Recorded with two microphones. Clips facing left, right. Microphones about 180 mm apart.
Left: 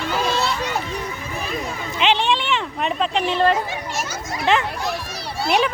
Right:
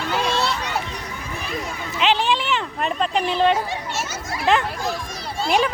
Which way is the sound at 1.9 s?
Centre (ahead or behind).